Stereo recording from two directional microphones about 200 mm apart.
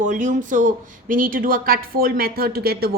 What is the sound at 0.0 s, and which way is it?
A woman's voice, 40° right (ahead or behind).